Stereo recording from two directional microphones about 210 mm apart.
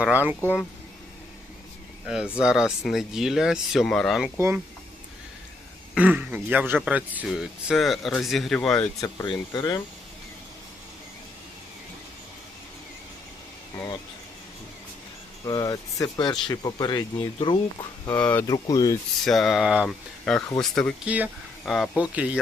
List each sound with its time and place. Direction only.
0.0 s speech: 10° right (ahead or behind)
0.4 s speech: 10° left (ahead or behind)
2.0 s speech: 5° right (ahead or behind)
4.4 s speech: 10° right (ahead or behind)
5.9 s speech: 5° right (ahead or behind)
9.0 s speech: 20° left (ahead or behind)
15.4 s speech: 15° left (ahead or behind)
18.1 s speech: 10° left (ahead or behind)
19.2 s speech: centre (ahead or behind)